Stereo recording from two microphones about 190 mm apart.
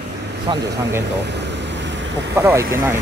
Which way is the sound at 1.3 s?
65° right (ahead or behind).